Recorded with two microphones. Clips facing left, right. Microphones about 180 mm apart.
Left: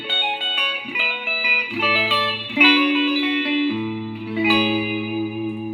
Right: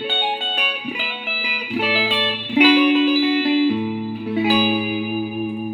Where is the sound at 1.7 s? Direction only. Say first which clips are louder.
Right 2 dB; 35° right (ahead or behind).